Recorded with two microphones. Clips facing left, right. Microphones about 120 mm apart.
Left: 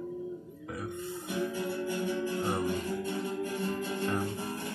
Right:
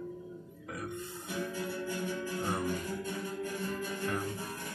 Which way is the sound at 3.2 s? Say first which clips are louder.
Left 4 dB; 55° left (ahead or behind).